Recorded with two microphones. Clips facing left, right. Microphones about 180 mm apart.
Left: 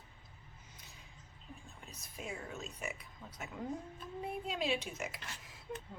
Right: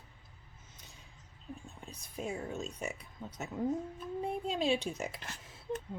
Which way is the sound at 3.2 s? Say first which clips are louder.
Right 7 dB; 15° right (ahead or behind).